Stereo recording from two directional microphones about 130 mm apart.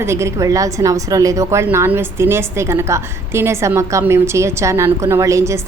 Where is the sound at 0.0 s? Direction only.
20° right (ahead or behind).